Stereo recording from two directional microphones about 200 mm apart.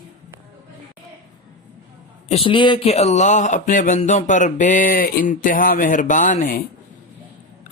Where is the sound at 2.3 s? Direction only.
25° left (ahead or behind).